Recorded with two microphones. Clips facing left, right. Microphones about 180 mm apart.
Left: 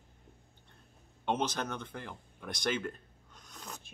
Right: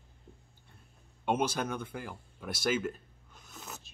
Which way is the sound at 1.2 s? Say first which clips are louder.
Right 2 dB; 10° right (ahead or behind).